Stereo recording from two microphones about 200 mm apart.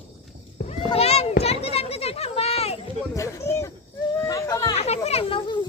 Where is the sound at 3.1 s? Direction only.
15° left (ahead or behind).